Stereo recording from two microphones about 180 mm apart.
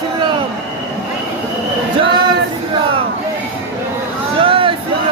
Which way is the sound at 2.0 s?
25° right (ahead or behind).